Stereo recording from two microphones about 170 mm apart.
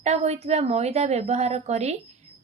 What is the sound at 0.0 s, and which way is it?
Speech, 40° right (ahead or behind).